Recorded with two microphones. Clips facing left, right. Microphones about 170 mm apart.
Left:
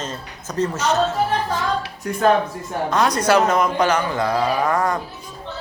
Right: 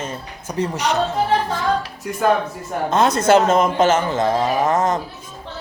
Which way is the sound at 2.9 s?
25° right (ahead or behind).